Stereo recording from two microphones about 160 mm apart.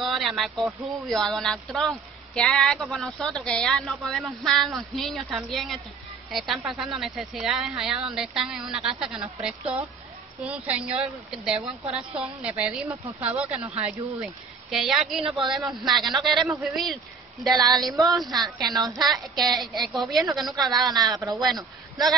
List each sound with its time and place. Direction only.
0.0 s a sound: centre (ahead or behind)
1.0 s a woman's voice: centre (ahead or behind)
15.2 s speech: 30° right (ahead or behind)
15.5 s speech: centre (ahead or behind)
17.6 s a woman's voice: 25° right (ahead or behind)
19.3 s speech: centre (ahead or behind)
20.8 s a woman's voice: 25° right (ahead or behind)